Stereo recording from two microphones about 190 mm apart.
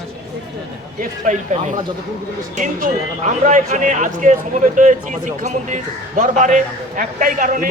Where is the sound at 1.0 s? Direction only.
40° right (ahead or behind).